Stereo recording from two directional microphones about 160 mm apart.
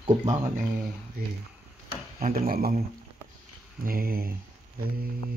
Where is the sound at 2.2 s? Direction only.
60° right (ahead or behind).